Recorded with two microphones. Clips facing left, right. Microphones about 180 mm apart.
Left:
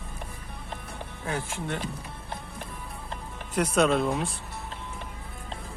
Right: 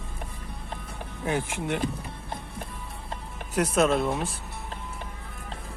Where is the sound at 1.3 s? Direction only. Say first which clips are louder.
Right 4 dB; 15° right (ahead or behind).